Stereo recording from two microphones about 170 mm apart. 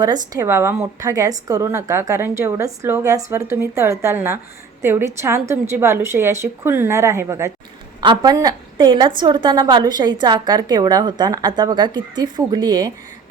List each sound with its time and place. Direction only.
0.0 s a woman's voice: 20° right (ahead or behind)